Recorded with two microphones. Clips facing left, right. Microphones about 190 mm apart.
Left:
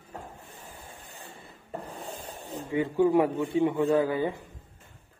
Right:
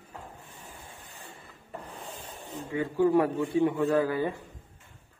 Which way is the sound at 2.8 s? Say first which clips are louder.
Left 1 dB; 15° left (ahead or behind).